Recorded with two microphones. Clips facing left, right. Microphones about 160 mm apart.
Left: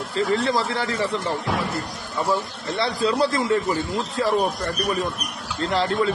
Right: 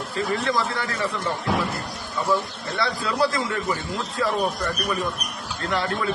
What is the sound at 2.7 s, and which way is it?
Speech, 25° left (ahead or behind).